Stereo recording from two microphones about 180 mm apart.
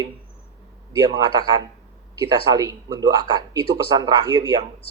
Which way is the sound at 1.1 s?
25° right (ahead or behind).